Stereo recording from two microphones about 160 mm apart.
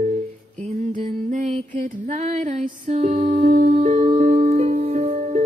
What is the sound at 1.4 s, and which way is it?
Female singing, 45° right (ahead or behind).